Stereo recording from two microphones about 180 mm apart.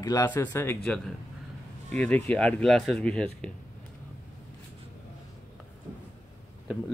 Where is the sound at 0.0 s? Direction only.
20° left (ahead or behind).